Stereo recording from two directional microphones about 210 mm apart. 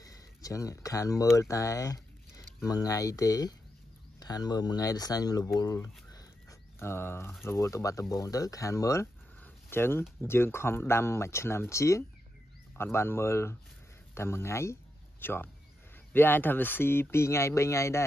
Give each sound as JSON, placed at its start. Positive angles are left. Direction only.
{"t": 0.0, "sound": "speech", "side_deg": 15}